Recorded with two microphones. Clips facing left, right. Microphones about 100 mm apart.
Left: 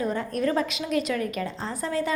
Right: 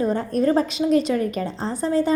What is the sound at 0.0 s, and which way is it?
A woman's voice, 30° right (ahead or behind).